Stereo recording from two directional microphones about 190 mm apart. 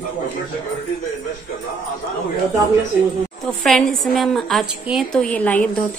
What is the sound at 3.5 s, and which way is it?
A woman's voice, centre (ahead or behind).